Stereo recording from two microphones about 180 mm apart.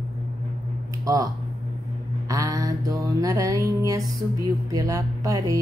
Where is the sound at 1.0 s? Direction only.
20° right (ahead or behind).